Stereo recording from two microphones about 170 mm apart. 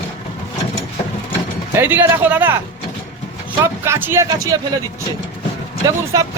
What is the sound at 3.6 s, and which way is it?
Speech, 15° right (ahead or behind).